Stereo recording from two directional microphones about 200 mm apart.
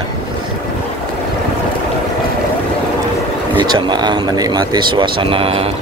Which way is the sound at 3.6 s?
25° right (ahead or behind).